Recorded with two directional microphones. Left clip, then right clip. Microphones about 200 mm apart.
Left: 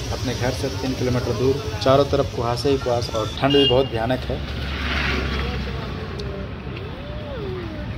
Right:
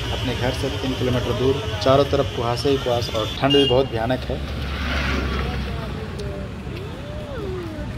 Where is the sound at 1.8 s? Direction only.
Centre (ahead or behind).